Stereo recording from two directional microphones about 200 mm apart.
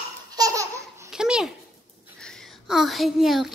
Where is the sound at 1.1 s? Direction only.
5° right (ahead or behind).